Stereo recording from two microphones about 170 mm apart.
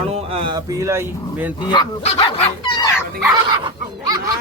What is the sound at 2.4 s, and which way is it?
Dog, 25° left (ahead or behind).